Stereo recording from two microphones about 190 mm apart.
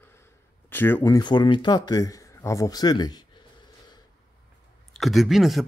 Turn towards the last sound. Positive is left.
turn(degrees=0)  # may be behind; listen again after turning